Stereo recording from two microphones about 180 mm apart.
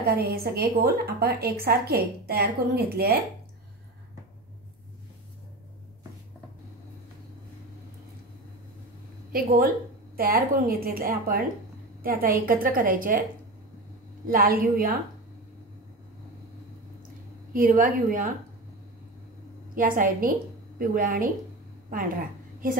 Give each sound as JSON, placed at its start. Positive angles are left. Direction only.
{"t": 0.0, "sound": "a woman's voice", "side_deg": -60}
{"t": 9.3, "sound": "a woman's voice", "side_deg": -55}
{"t": 14.2, "sound": "a woman's voice", "side_deg": -55}
{"t": 17.5, "sound": "a woman's voice", "side_deg": -50}
{"t": 19.7, "sound": "a woman's voice", "side_deg": -50}